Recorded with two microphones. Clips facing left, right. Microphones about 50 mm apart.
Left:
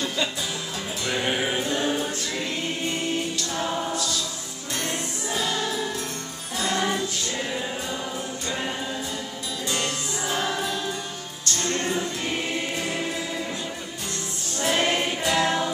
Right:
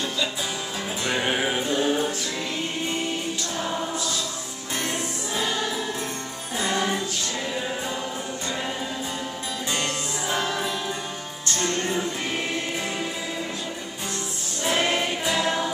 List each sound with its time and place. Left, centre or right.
1.1 s music: centre
4.8 s music: centre
9.7 s music: right
14.6 s choir: centre